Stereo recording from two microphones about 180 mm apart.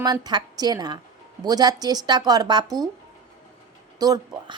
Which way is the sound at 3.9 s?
20° right (ahead or behind).